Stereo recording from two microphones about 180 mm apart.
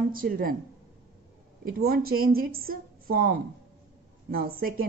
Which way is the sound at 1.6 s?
55° right (ahead or behind).